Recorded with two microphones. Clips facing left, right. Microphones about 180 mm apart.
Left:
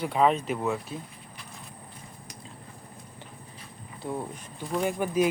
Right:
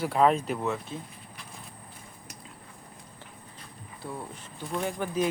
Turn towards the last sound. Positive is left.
turn(degrees=10)  # may be behind; listen again after turning